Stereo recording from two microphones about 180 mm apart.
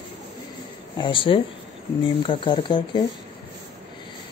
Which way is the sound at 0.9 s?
25° left (ahead or behind).